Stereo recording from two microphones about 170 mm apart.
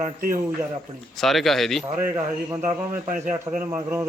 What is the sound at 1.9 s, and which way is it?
Speech, 10° right (ahead or behind).